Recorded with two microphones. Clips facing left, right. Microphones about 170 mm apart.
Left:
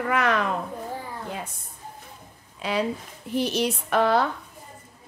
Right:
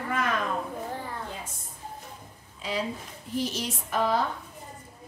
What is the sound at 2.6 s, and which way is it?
A woman's voice, 65° left (ahead or behind).